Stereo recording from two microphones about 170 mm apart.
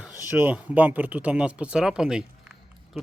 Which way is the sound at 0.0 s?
10° right (ahead or behind).